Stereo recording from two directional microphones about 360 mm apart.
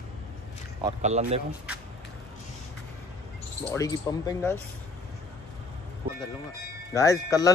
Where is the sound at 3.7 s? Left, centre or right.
Centre.